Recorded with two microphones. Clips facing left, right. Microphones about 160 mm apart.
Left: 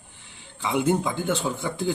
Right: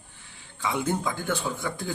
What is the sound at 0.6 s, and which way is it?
A man's voice, 25° left (ahead or behind).